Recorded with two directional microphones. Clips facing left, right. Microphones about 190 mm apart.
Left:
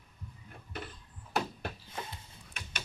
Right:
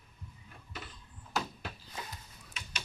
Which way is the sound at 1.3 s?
60° left (ahead or behind).